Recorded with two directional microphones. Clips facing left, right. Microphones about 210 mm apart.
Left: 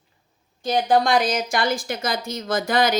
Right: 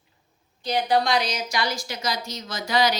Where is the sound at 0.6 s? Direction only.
50° left (ahead or behind).